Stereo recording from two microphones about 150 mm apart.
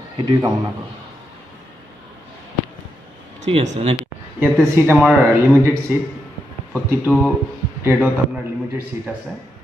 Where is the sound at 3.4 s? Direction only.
45° right (ahead or behind).